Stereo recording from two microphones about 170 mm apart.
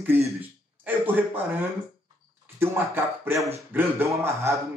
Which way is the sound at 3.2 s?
15° right (ahead or behind).